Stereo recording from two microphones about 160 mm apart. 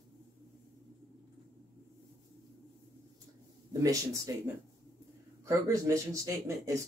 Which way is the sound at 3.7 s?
20° right (ahead or behind).